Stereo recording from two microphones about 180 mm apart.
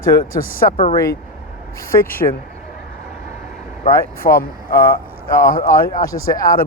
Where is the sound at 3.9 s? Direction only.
50° left (ahead or behind).